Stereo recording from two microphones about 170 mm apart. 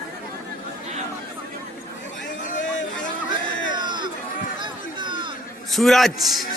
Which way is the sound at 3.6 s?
25° right (ahead or behind).